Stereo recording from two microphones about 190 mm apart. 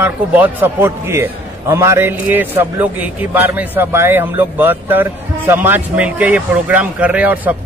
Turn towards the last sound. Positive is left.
turn(degrees=-10)  # may be behind; listen again after turning